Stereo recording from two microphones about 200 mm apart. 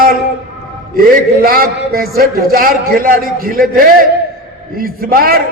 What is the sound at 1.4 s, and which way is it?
A man's voice, 45° right (ahead or behind).